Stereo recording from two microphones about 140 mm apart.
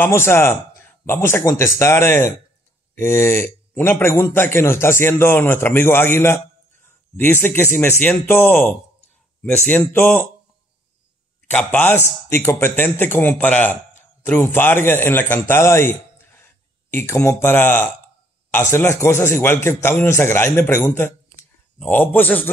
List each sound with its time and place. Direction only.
0.0 s a man's voice: 15° left (ahead or behind)
9.9 s a man's voice: 15° left (ahead or behind)
11.4 s a man's voice: 10° left (ahead or behind)